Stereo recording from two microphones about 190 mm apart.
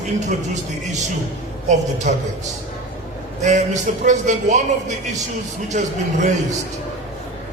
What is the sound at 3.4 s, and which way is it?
A man's voice, 40° right (ahead or behind).